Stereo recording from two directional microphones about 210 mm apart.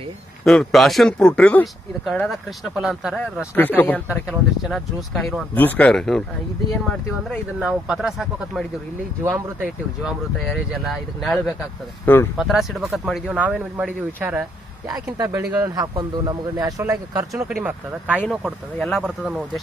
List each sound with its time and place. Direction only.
0.5 s speech: centre (ahead or behind)
3.5 s speech: 10° left (ahead or behind)
7.2 s a man's voice: 5° right (ahead or behind)
10.4 s speech: centre (ahead or behind)
14.9 s a man's voice: 15° right (ahead or behind)